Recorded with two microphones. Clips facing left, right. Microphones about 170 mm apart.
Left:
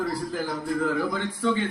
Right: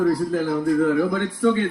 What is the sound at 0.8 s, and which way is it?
Speech, 55° right (ahead or behind).